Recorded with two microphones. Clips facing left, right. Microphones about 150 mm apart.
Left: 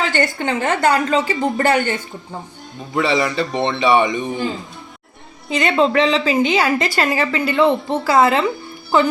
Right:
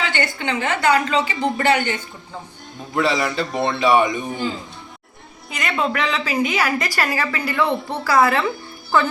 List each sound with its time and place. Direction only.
0.1 s a woman's voice: 45° left (ahead or behind)
2.9 s a man's voice: centre (ahead or behind)
5.5 s a woman's voice: 30° left (ahead or behind)